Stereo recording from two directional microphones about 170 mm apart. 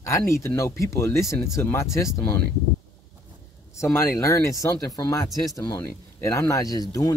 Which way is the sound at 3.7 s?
15° left (ahead or behind).